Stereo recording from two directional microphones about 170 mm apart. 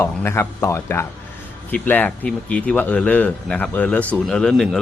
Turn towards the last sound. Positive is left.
turn(degrees=0)  # may be behind; listen again after turning